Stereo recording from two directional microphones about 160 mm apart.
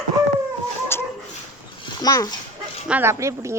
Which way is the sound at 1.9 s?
25° left (ahead or behind).